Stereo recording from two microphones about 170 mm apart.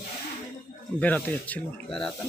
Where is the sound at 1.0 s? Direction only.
10° left (ahead or behind).